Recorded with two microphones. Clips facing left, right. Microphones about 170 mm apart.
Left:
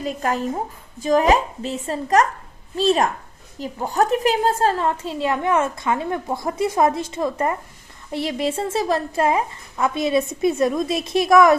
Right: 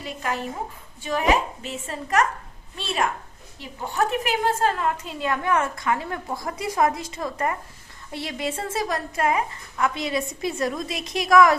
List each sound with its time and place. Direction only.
0.0 s a woman's voice: 40° left (ahead or behind); by 11.5 s 25° left (ahead or behind)